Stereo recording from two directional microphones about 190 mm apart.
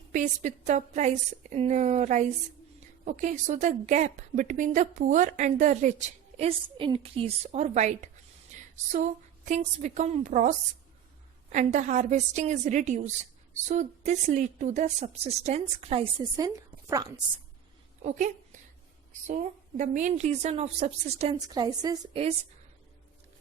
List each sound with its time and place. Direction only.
0.1 s a woman's voice: 40° right (ahead or behind); by 17.1 s 15° right (ahead or behind)
18.0 s speech: 40° right (ahead or behind)
19.3 s a woman's voice: 40° right (ahead or behind)
21.3 s a woman's voice: 20° right (ahead or behind)